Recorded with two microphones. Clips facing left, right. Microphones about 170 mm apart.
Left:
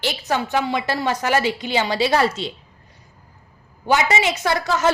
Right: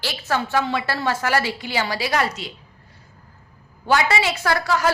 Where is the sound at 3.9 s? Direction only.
20° left (ahead or behind).